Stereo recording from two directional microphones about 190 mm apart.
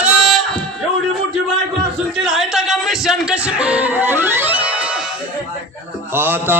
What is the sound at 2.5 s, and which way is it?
Speech, centre (ahead or behind).